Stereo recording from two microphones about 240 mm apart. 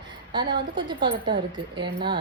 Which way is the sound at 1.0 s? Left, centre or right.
Right.